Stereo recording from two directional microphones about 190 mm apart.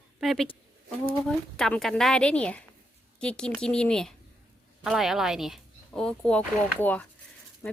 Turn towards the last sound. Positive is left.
turn(degrees=10)  # may be behind; listen again after turning